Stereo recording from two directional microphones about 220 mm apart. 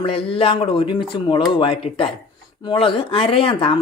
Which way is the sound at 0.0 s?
25° left (ahead or behind).